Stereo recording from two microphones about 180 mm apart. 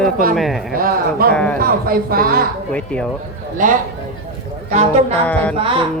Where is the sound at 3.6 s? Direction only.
45° right (ahead or behind); by 5.8 s 30° right (ahead or behind).